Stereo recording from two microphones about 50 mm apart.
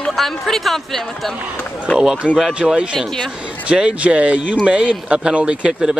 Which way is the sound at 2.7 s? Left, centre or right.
Centre.